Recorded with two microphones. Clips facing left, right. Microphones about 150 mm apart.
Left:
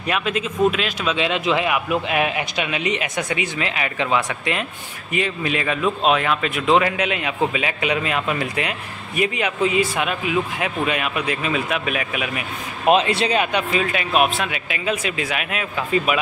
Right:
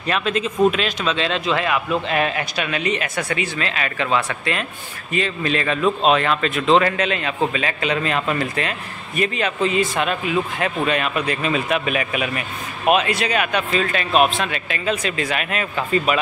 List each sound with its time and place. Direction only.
0.0 s a man's voice: 10° left (ahead or behind)
12.8 s a man's voice: 25° left (ahead or behind); by 16.2 s 5° left (ahead or behind)